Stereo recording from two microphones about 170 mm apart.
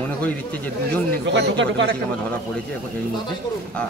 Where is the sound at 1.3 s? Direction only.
90° right.